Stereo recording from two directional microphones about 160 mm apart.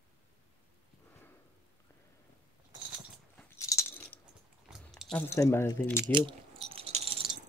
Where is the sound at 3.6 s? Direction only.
20° left (ahead or behind).